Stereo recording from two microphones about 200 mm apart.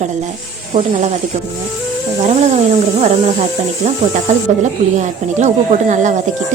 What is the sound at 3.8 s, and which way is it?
Speech, 35° right (ahead or behind).